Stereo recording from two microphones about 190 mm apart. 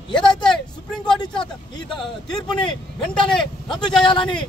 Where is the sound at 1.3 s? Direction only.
5° left (ahead or behind).